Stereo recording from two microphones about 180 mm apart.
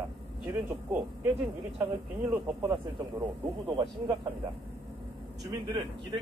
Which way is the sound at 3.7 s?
20° right (ahead or behind).